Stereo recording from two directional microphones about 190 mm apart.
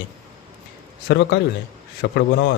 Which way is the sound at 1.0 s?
65° left (ahead or behind).